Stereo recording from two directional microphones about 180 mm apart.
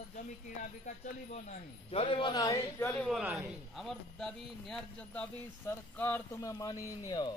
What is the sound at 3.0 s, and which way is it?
A man's voice, centre (ahead or behind).